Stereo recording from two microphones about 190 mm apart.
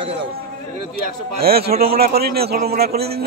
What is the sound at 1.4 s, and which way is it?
A man's voice, 55° right (ahead or behind).